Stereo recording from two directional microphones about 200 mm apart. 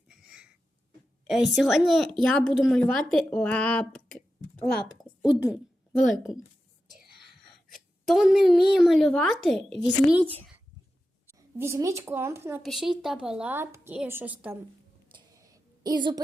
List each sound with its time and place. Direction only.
0.1 s a sound: 5° right (ahead or behind)
1.3 s speech: centre (ahead or behind)
7.7 s a woman's voice: centre (ahead or behind)
11.3 s a woman's voice: 10° right (ahead or behind)
12.6 s a woman's voice: centre (ahead or behind)
15.1 s a sound: 15° right (ahead or behind)